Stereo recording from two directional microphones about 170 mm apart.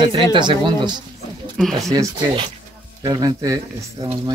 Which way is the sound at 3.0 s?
20° right (ahead or behind).